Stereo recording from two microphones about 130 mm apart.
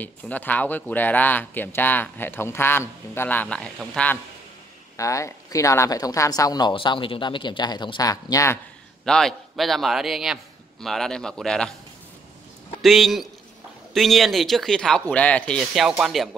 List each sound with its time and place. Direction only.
0.0 s speech: 15° left (ahead or behind)
4.9 s speech: 25° left (ahead or behind)
6.7 s speech: 40° left (ahead or behind)
9.0 s a man's voice: 5° left (ahead or behind)
12.8 s a man's voice: centre (ahead or behind)